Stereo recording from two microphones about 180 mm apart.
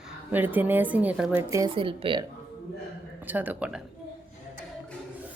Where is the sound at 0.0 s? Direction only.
10° right (ahead or behind).